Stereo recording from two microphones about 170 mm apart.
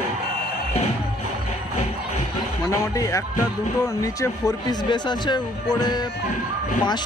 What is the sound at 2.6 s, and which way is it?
Speech, 20° left (ahead or behind).